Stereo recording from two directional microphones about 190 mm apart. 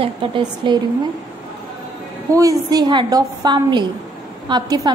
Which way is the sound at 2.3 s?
20° right (ahead or behind).